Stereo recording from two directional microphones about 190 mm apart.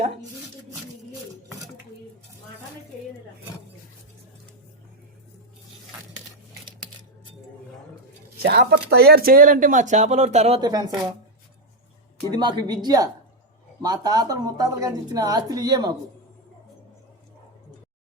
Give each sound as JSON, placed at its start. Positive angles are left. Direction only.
{"t": 8.4, "sound": "speech", "side_deg": -55}
{"t": 10.6, "sound": "speech", "side_deg": -20}
{"t": 12.3, "sound": "speech", "side_deg": -20}